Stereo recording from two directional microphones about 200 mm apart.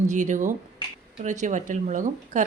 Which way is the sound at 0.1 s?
40° right (ahead or behind).